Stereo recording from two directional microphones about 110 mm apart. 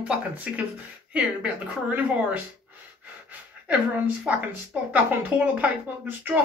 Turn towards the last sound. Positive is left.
turn(degrees=-15)  # may be behind; listen again after turning